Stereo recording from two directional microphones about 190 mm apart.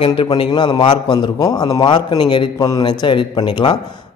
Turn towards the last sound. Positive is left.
turn(degrees=25)  # may be behind; listen again after turning